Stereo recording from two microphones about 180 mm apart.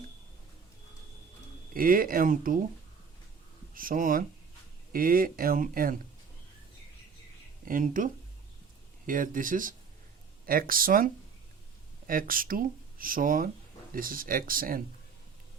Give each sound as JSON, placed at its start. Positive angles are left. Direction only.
{"t": 1.7, "sound": "speech", "side_deg": -50}
{"t": 3.8, "sound": "speech", "side_deg": -50}
{"t": 7.6, "sound": "speech", "side_deg": -50}